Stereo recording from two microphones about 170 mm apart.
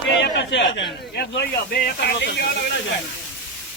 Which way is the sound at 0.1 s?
90° left.